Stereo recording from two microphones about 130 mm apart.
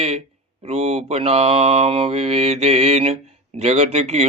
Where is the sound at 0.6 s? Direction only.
50° right (ahead or behind).